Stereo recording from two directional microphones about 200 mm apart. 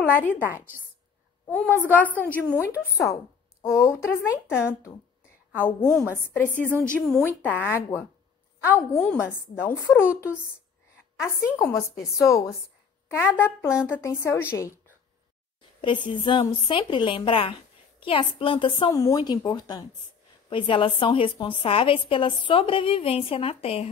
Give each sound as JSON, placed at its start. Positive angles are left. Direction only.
{"t": 0.0, "sound": "a woman's voice", "side_deg": 10}
{"t": 0.3, "sound": "a woman's voice", "side_deg": -10}
{"t": 1.5, "sound": "a woman's voice", "side_deg": 5}
{"t": 6.0, "sound": "a woman's voice", "side_deg": 10}
{"t": 9.2, "sound": "a woman's voice", "side_deg": 10}
{"t": 15.8, "sound": "a woman's voice", "side_deg": 25}